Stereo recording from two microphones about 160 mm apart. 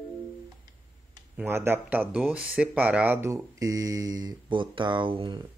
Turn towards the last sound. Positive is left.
turn(degrees=-30)  # may be behind; listen again after turning